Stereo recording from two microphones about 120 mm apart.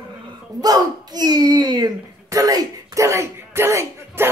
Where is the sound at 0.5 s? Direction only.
35° right (ahead or behind).